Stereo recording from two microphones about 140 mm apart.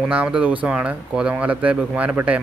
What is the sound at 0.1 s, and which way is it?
A man's voice, 10° right (ahead or behind).